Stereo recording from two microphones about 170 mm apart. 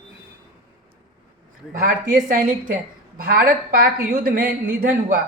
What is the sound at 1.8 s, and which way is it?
A woman's voice, 50° right (ahead or behind).